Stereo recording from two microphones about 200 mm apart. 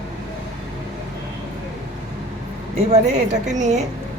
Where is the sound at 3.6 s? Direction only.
35° right (ahead or behind).